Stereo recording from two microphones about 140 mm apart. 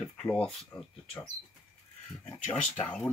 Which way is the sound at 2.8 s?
10° left (ahead or behind).